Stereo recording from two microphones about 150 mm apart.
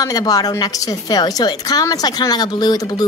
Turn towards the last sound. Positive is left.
turn(degrees=25)  # may be behind; listen again after turning